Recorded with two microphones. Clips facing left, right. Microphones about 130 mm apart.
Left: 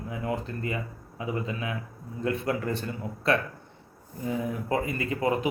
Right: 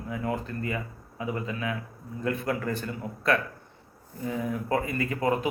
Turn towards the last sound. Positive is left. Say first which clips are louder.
# even
turn(degrees=25)  # may be behind; listen again after turning